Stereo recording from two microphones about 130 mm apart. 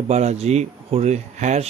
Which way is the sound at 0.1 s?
60° right (ahead or behind).